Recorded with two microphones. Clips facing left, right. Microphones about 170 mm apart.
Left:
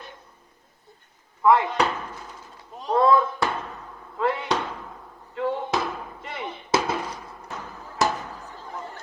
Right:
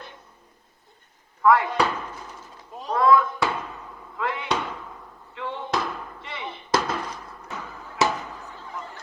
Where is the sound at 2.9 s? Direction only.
30° left (ahead or behind).